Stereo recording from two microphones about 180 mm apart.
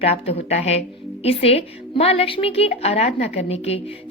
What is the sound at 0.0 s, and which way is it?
A woman's voice, 35° left (ahead or behind).